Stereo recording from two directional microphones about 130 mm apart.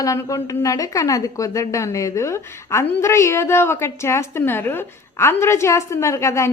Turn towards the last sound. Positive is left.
turn(degrees=20)  # may be behind; listen again after turning